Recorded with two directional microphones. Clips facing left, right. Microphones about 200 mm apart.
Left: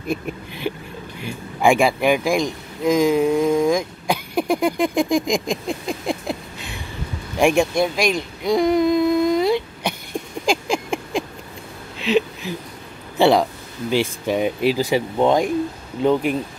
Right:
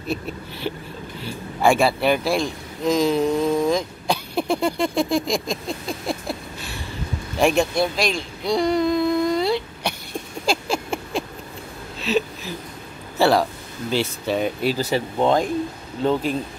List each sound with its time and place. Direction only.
0.1 s speech: 15° left (ahead or behind)
10.4 s a sound: 15° left (ahead or behind)
13.2 s speech: 15° left (ahead or behind)